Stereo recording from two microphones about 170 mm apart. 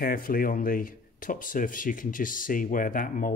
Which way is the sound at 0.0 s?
55° left (ahead or behind).